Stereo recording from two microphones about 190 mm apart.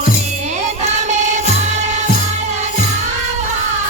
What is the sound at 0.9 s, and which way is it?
Music, 35° right (ahead or behind).